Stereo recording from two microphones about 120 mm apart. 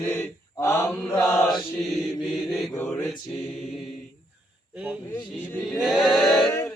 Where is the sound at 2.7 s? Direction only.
20° left (ahead or behind).